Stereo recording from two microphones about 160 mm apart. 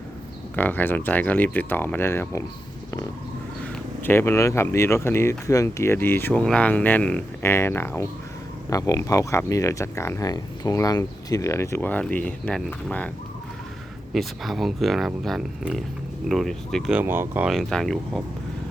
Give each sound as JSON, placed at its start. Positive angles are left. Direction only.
{"t": 0.5, "sound": "speech", "side_deg": 10}
{"t": 4.0, "sound": "speech", "side_deg": 15}
{"t": 14.1, "sound": "speech", "side_deg": 0}
{"t": 16.9, "sound": "speech", "side_deg": -10}
{"t": 17.5, "sound": "speech", "side_deg": 5}